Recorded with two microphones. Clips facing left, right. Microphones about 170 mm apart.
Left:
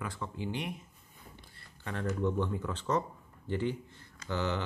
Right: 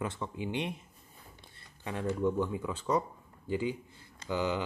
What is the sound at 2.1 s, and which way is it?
Speech, 10° right (ahead or behind).